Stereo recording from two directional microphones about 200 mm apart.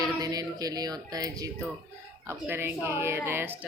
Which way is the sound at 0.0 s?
20° right (ahead or behind).